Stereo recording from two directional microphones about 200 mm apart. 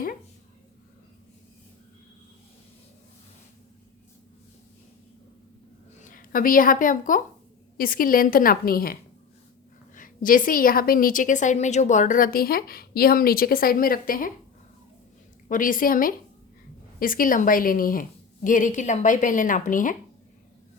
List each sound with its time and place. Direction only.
6.0 s a woman's voice: 40° left (ahead or behind)
15.4 s a woman's voice: 40° left (ahead or behind)